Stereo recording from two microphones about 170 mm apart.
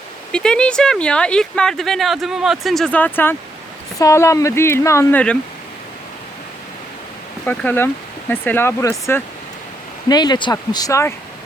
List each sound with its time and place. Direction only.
0.3 s speech: 5° left (ahead or behind)
7.4 s speech: 10° left (ahead or behind)